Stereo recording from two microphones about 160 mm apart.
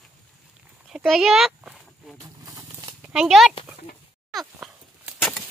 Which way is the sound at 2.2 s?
20° right (ahead or behind).